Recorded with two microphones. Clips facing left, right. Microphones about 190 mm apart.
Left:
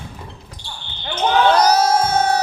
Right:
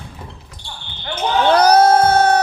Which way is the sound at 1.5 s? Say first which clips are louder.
Right 4 dB; 60° right (ahead or behind).